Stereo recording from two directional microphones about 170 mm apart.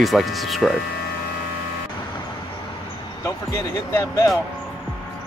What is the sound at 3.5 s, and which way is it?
Speech, 15° left (ahead or behind).